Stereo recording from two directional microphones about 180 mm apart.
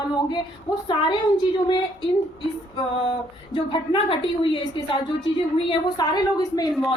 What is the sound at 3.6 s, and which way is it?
A woman's voice, 25° left (ahead or behind).